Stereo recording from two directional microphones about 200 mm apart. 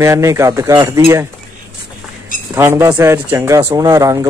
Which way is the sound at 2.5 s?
10° right (ahead or behind).